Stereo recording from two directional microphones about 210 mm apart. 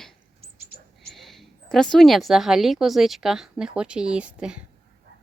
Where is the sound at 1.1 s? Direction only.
Centre (ahead or behind).